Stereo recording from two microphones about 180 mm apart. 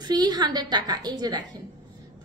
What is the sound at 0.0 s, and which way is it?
A woman's voice, 25° right (ahead or behind).